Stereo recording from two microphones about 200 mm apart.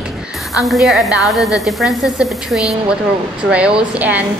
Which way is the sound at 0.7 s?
Centre (ahead or behind).